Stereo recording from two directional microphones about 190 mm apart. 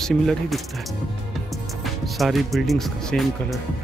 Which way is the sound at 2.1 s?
Centre (ahead or behind).